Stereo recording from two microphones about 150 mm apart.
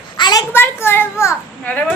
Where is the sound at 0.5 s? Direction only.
15° left (ahead or behind).